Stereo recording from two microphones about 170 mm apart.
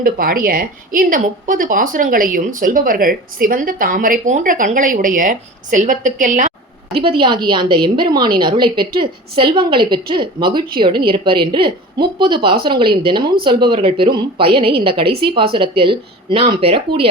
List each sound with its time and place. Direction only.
0.0 s a woman's voice: 60° right (ahead or behind)
7.1 s a woman's voice: 30° right (ahead or behind)